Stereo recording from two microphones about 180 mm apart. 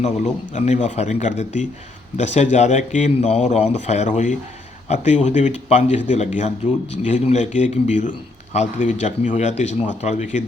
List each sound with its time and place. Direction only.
0.5 s speech: 40° left (ahead or behind)